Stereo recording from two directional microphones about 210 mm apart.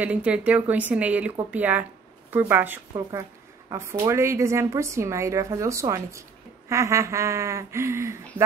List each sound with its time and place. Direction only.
0.0 s a woman's voice: 5° right (ahead or behind)